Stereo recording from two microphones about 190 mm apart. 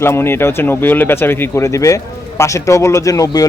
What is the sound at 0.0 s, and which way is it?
Speech, 10° left (ahead or behind).